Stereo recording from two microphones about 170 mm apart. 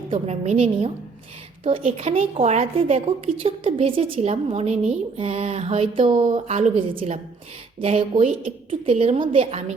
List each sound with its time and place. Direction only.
0.1 s a woman's voice: 35° right (ahead or behind)
8.3 s a woman's voice: 55° right (ahead or behind)
9.0 s a woman's voice: 35° right (ahead or behind)